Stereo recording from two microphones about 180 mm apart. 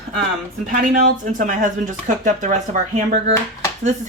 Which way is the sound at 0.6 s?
45° right (ahead or behind).